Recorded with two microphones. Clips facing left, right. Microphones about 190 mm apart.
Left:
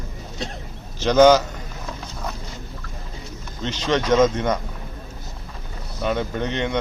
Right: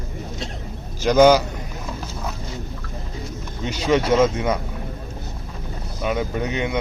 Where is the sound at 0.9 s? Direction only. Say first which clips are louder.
Even; 10° right (ahead or behind).